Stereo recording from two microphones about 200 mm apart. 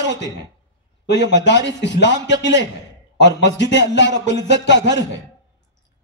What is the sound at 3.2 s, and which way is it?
A man's voice, 60° left (ahead or behind).